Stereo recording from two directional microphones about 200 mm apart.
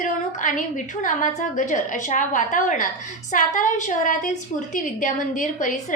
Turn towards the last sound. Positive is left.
turn(degrees=40)  # may be behind; listen again after turning